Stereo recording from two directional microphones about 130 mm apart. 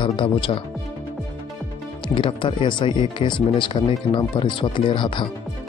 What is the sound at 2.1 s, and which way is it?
Speech, 40° left (ahead or behind).